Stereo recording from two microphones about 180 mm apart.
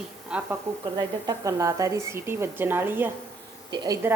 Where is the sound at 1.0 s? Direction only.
20° right (ahead or behind).